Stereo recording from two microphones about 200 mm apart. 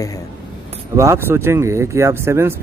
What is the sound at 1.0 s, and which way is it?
Speech, 15° right (ahead or behind).